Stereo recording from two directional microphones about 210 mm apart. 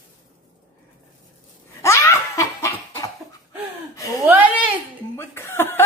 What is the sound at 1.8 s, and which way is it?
Laughter, 15° left (ahead or behind).